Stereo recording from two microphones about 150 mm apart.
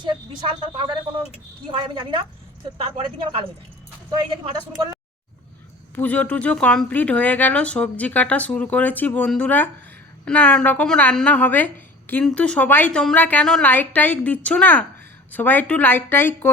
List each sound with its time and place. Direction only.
0.0 s speech: 30° right (ahead or behind)
6.0 s speech: 10° left (ahead or behind)